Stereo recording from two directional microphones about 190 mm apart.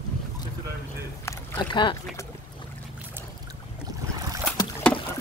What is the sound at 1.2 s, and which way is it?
Boat, 15° left (ahead or behind).